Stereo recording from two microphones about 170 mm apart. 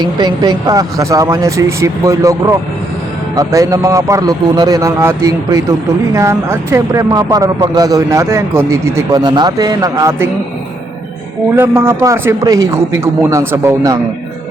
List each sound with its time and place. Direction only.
0.0 s speech: 25° right (ahead or behind)
11.8 s speech: 15° right (ahead or behind)